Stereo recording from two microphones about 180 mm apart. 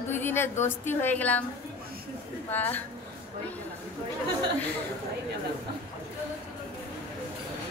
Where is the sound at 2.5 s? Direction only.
10° left (ahead or behind).